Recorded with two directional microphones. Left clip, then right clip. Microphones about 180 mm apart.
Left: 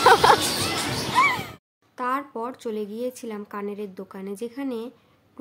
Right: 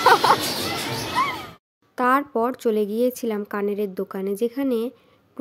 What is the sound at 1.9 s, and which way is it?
A woman's voice, 35° right (ahead or behind).